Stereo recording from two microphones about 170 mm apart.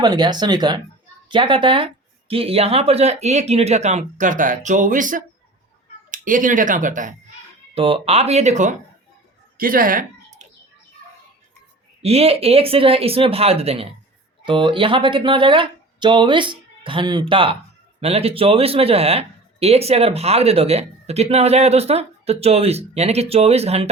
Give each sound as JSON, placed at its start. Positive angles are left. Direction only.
{"t": 0.0, "sound": "speech", "side_deg": -25}
{"t": 7.8, "sound": "speech", "side_deg": -35}
{"t": 9.6, "sound": "speech", "side_deg": -55}
{"t": 12.0, "sound": "speech", "side_deg": -35}